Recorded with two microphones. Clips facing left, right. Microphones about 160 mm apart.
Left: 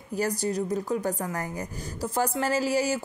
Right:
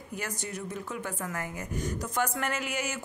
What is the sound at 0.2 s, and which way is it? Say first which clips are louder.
A woman's voice: left 11 dB; 35° left (ahead or behind).